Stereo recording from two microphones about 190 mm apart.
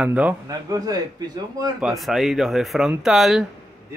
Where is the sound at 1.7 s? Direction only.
Centre (ahead or behind).